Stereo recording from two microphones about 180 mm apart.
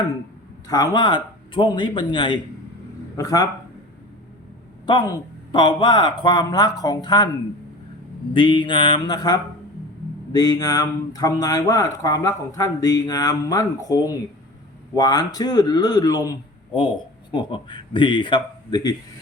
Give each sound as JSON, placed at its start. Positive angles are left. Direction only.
{"t": 0.7, "sound": "speech", "side_deg": 20}
{"t": 4.9, "sound": "speech", "side_deg": 25}
{"t": 8.3, "sound": "speech", "side_deg": 25}